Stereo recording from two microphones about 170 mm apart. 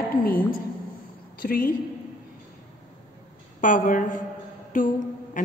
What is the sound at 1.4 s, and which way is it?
Speech, 55° left (ahead or behind).